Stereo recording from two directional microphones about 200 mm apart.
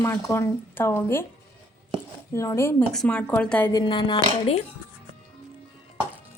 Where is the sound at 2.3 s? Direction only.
15° left (ahead or behind).